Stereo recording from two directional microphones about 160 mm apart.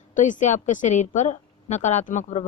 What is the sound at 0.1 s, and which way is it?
A woman's voice, 55° left (ahead or behind).